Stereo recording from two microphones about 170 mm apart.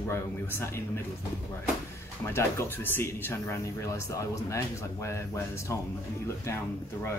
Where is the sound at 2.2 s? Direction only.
15° left (ahead or behind).